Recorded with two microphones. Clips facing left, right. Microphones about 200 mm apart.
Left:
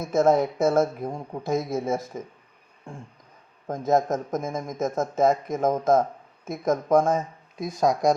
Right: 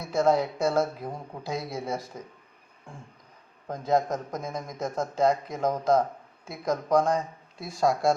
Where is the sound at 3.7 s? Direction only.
20° left (ahead or behind).